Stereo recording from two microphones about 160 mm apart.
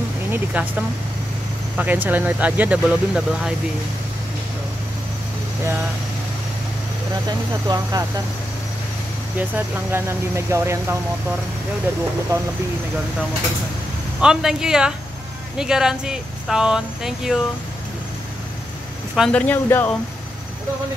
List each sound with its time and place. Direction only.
0.3 s speech: 10° right (ahead or behind)
7.2 s speech: 25° right (ahead or behind)
9.4 s speech: 15° right (ahead or behind)
14.2 s speech: 5° right (ahead or behind)
19.1 s speech: 5° left (ahead or behind)